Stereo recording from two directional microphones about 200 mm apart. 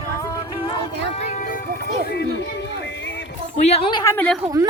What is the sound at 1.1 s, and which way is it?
Music, 40° left (ahead or behind).